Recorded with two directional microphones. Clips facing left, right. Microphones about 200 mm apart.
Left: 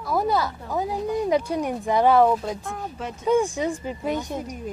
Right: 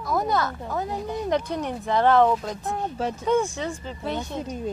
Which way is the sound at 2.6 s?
30° right (ahead or behind).